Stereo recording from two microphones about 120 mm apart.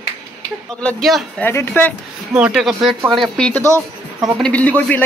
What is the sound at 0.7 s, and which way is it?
Speech, 5° left (ahead or behind).